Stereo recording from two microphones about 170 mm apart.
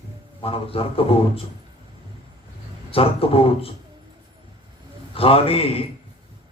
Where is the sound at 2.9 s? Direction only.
35° left (ahead or behind).